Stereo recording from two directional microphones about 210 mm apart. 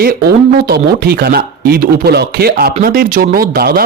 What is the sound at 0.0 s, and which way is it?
Speech, 50° right (ahead or behind).